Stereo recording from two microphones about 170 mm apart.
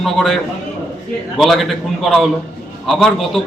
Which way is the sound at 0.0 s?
Centre (ahead or behind).